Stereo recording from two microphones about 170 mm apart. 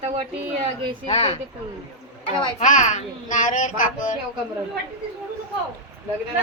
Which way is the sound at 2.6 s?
45° left (ahead or behind).